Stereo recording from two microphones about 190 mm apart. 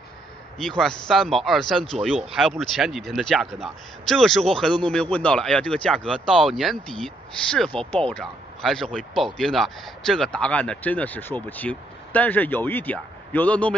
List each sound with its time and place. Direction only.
0.6 s speech: 5° left (ahead or behind)